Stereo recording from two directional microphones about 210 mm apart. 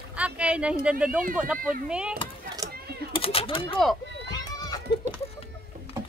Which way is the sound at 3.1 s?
25° left (ahead or behind).